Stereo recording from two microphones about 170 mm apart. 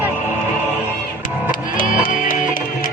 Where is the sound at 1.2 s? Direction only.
55° left (ahead or behind).